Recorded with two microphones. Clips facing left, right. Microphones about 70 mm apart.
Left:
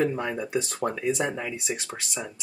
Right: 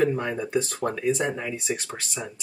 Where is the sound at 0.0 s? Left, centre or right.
Centre.